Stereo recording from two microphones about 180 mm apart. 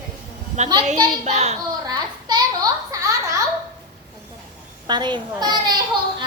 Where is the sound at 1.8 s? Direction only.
20° right (ahead or behind).